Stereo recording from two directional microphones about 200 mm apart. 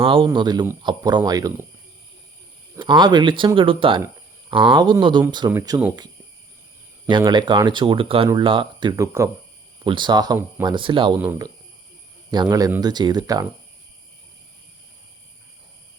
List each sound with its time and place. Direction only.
0.0 s speech: 25° right (ahead or behind)
2.7 s speech: 25° right (ahead or behind)
7.1 s speech: 20° right (ahead or behind)